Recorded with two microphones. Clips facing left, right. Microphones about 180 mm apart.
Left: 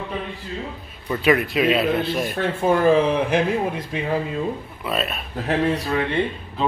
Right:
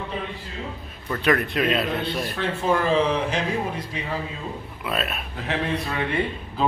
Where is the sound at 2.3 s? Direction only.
55° left (ahead or behind).